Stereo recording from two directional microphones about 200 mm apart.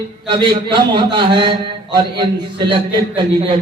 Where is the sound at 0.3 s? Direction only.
25° right (ahead or behind).